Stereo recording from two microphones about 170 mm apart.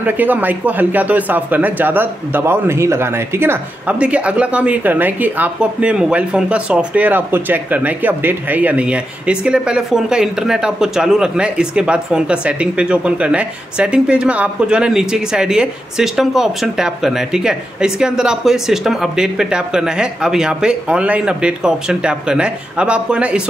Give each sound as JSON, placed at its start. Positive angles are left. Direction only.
{"t": 0.0, "sound": "speech", "side_deg": -10}